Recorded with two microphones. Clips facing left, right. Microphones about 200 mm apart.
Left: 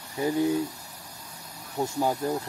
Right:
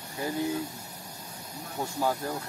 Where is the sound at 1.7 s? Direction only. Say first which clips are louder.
Left 3 dB; 25° left (ahead or behind).